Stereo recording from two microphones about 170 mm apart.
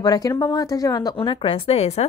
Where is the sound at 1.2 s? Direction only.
30° left (ahead or behind).